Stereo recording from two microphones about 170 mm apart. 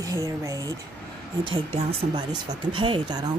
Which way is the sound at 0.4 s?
20° right (ahead or behind).